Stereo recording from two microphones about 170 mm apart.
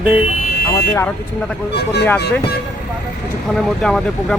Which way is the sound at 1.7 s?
75° left (ahead or behind).